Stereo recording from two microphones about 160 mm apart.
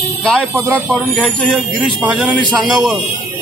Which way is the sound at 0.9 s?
Centre (ahead or behind).